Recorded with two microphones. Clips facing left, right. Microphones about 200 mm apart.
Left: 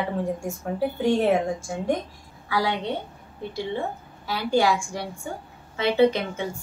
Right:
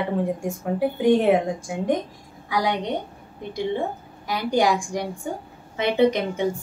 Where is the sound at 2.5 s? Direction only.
15° right (ahead or behind).